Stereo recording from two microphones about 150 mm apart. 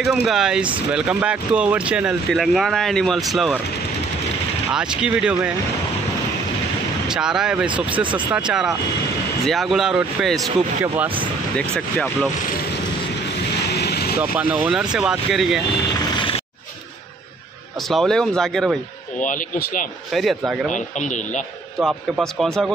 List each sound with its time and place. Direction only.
0.0 s speech: centre (ahead or behind)
4.7 s speech: 5° right (ahead or behind)
7.1 s speech: 5° right (ahead or behind)
8.0 s speech: 35° right (ahead or behind)
8.3 s speech: 5° right (ahead or behind)
13.6 s vehicle: 90° left
14.3 s speech: 10° right (ahead or behind)
16.2 s a sound: 35° left (ahead or behind)
17.8 s speech: centre (ahead or behind)
19.1 s speech: 60° left (ahead or behind)
20.1 s speech: centre (ahead or behind)
20.7 s speech: 55° left (ahead or behind)
22.4 s speech: centre (ahead or behind)